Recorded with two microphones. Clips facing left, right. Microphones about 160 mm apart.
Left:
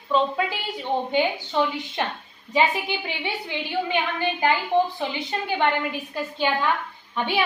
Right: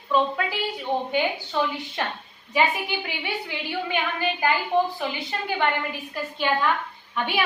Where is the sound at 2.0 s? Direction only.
20° left (ahead or behind).